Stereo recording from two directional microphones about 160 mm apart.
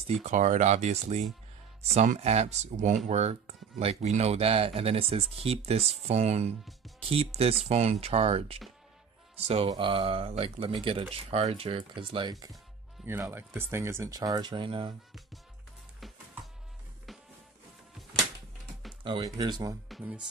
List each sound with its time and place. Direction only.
0.2 s speech: 50° right (ahead or behind); by 12.5 s 25° right (ahead or behind)
13.0 s speech: 15° right (ahead or behind); by 15.0 s 30° right (ahead or behind)
19.2 s speech: 25° right (ahead or behind)
19.9 s speech: 5° right (ahead or behind)